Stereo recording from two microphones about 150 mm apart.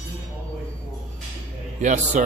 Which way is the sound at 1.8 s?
50° right (ahead or behind).